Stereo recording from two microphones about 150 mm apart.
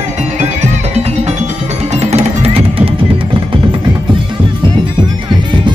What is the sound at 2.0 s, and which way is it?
Music, 45° right (ahead or behind).